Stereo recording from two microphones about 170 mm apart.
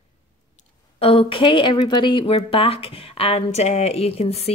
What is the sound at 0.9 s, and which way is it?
A woman's voice, 35° left (ahead or behind).